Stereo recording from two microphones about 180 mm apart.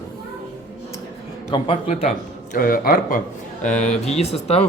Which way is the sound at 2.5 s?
50° left (ahead or behind).